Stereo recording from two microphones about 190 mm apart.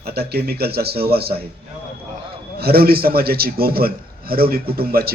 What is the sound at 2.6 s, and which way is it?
A man's voice, 55° right (ahead or behind).